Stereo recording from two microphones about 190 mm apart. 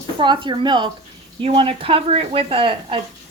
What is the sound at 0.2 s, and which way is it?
Speech, 25° right (ahead or behind).